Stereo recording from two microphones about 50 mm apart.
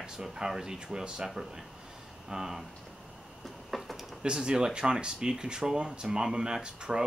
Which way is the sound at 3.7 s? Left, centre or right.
Centre.